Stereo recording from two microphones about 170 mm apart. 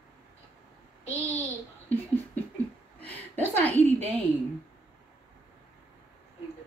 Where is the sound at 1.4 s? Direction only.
10° left (ahead or behind).